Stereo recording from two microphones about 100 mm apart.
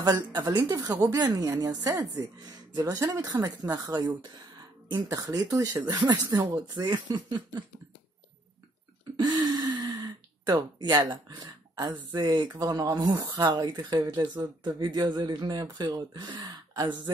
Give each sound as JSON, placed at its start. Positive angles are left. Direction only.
{"t": 0.0, "sound": "speech", "side_deg": -45}
{"t": 9.1, "sound": "gasp", "side_deg": -50}
{"t": 10.8, "sound": "speech", "side_deg": -45}